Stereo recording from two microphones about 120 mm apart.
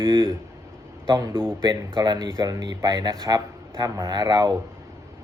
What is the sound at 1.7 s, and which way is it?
Speech, 40° right (ahead or behind).